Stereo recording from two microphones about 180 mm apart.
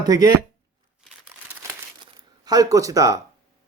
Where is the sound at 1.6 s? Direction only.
20° right (ahead or behind).